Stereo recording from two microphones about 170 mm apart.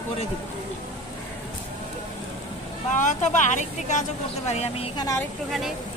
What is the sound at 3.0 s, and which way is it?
Speech, 50° left (ahead or behind).